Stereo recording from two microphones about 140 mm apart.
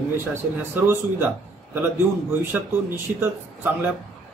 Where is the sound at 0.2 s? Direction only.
15° right (ahead or behind).